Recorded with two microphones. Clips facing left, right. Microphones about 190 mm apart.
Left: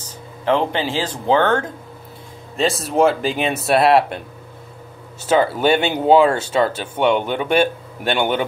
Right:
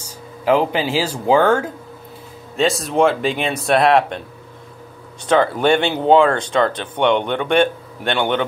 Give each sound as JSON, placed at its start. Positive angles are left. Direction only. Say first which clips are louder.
{"t": 0.0, "sound": "speech", "louder": "right 2 dB", "side_deg": -10}
{"t": 5.2, "sound": "speech", "louder": "right 1 dB", "side_deg": 5}